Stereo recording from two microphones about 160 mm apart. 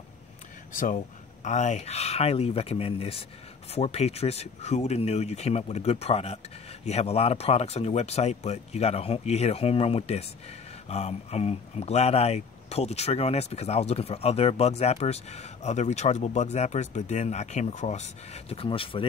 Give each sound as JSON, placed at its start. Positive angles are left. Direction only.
{"t": 0.7, "sound": "speech", "side_deg": 55}